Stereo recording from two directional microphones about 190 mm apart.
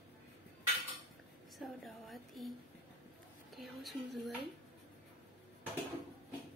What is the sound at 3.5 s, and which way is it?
Speech, centre (ahead or behind).